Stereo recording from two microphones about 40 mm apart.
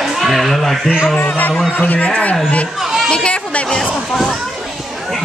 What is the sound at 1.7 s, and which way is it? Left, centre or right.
Speech, left.